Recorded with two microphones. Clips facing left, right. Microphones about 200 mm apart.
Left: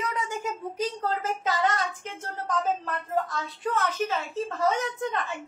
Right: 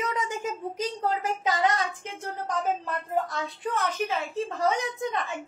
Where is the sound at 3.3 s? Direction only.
15° right (ahead or behind).